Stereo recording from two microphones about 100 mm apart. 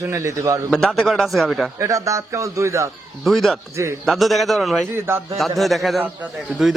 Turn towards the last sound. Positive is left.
turn(degrees=-15)  # may be behind; listen again after turning